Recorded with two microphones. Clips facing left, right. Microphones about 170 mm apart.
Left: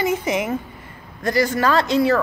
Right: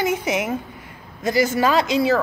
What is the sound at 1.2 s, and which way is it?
Speech, 20° right (ahead or behind).